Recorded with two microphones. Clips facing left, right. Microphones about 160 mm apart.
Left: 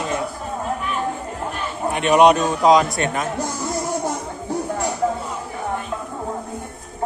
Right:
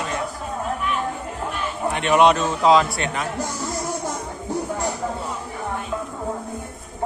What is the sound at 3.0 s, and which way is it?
Speech, 45° left (ahead or behind).